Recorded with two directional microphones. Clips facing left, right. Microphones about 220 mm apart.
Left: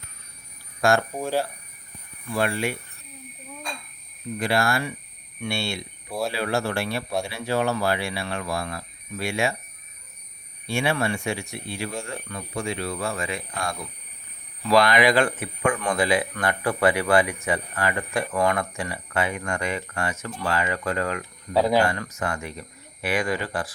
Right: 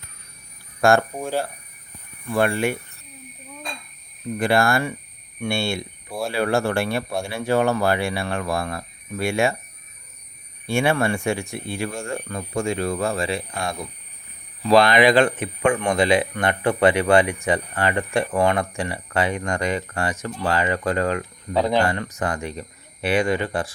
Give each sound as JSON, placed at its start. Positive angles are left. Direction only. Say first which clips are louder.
{"t": 0.8, "sound": "speech", "louder": "right 4 dB", "side_deg": -50}
{"t": 1.1, "sound": "speech", "louder": "even", "side_deg": 0}
{"t": 2.3, "sound": "speech", "louder": "right 4 dB", "side_deg": -50}
{"t": 4.4, "sound": "speech", "louder": "right 4 dB", "side_deg": -50}
{"t": 10.7, "sound": "speech", "louder": "right 4 dB", "side_deg": -50}
{"t": 21.5, "sound": "speech", "louder": "even", "side_deg": 5}
{"t": 21.8, "sound": "speech", "louder": "right 3 dB", "side_deg": -30}